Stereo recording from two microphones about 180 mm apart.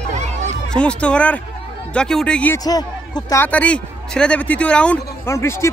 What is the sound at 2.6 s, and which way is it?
A man's voice, 20° left (ahead or behind).